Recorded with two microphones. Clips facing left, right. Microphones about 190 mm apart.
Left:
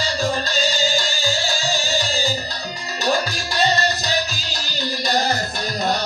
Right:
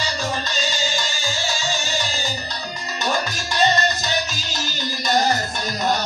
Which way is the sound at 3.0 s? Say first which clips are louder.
Left 3 dB; 35° left (ahead or behind).